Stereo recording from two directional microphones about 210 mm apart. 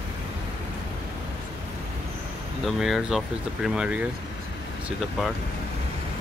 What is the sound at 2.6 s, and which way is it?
Speech, centre (ahead or behind).